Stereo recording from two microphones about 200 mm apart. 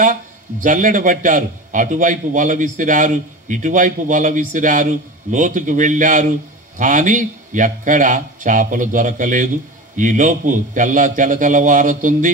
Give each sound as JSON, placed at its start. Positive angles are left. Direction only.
{"t": 0.0, "sound": "a man's voice", "side_deg": -40}